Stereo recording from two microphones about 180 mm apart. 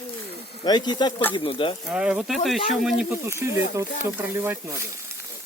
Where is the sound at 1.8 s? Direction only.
5° right (ahead or behind).